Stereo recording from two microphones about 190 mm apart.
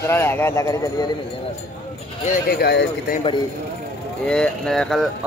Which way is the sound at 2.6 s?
60° left (ahead or behind).